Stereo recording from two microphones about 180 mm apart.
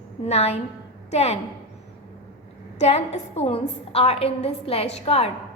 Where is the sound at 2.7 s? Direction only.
35° left (ahead or behind).